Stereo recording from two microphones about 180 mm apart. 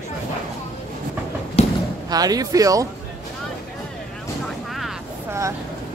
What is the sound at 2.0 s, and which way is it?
Speech, 20° right (ahead or behind).